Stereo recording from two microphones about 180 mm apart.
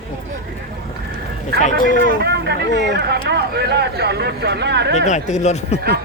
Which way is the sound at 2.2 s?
65° right (ahead or behind).